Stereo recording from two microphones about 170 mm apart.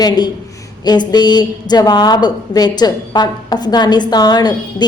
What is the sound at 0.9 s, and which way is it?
A woman's voice, 25° left (ahead or behind).